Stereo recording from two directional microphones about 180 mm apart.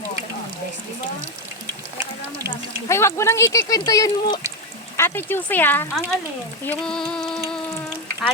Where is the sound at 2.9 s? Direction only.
15° left (ahead or behind).